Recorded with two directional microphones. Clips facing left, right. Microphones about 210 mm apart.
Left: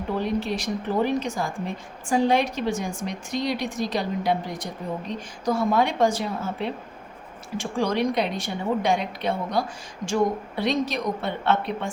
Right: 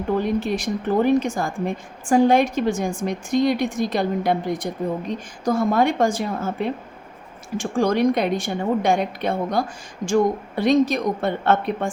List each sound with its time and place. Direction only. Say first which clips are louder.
0.3 s a woman's voice: right 3 dB; 50° right (ahead or behind)